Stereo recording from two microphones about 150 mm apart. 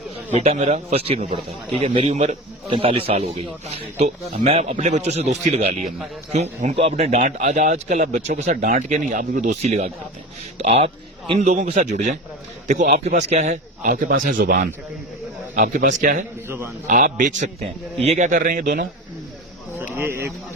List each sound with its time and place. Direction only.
0.3 s a man's voice: 50° right (ahead or behind)
13.1 s speech: 50° right (ahead or behind)
16.5 s a man's voice: 15° right (ahead or behind)
16.8 s speech: 60° right (ahead or behind)
18.0 s speech: 50° right (ahead or behind); by 18.9 s 70° right (ahead or behind)
19.8 s speech: 15° right (ahead or behind)